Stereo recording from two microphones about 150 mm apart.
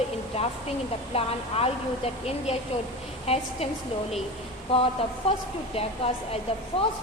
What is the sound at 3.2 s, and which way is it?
Speech, 40° left (ahead or behind).